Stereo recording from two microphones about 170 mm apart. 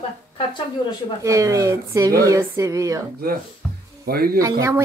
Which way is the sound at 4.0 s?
65° right (ahead or behind).